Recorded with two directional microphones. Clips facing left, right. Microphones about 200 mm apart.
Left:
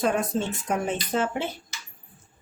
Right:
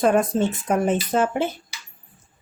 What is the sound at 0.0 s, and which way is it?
Speech, 50° right (ahead or behind).